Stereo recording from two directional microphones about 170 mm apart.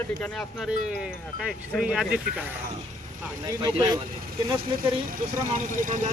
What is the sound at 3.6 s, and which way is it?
Speech, 25° right (ahead or behind).